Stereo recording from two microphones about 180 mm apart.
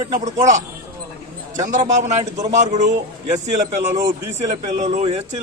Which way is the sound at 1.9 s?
40° right (ahead or behind).